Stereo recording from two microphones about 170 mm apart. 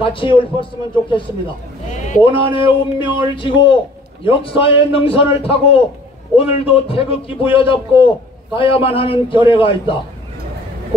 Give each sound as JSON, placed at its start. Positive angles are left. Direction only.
{"t": 0.0, "sound": "a man's voice", "side_deg": 30}
{"t": 1.9, "sound": "a sound", "side_deg": 45}
{"t": 2.2, "sound": "a man's voice", "side_deg": 30}